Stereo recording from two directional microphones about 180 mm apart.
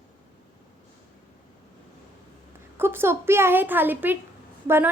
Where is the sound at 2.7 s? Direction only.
15° right (ahead or behind).